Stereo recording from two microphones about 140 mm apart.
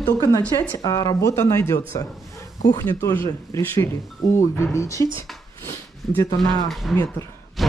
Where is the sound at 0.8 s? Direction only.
25° left (ahead or behind).